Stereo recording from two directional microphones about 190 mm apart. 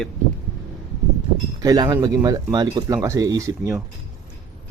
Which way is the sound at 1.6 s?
20° right (ahead or behind).